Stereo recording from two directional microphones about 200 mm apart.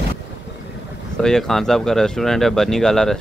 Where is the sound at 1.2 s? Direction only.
Centre (ahead or behind).